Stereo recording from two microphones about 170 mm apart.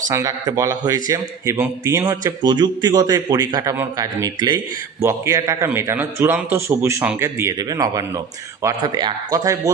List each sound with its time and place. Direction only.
0.1 s a man's voice: 20° right (ahead or behind)